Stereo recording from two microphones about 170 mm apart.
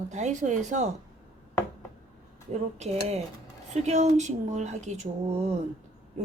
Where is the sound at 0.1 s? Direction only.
45° right (ahead or behind).